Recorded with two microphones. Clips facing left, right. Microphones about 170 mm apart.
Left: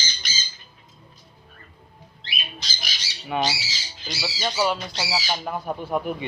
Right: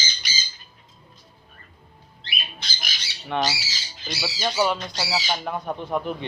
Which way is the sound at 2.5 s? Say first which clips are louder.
Even; 60° right (ahead or behind).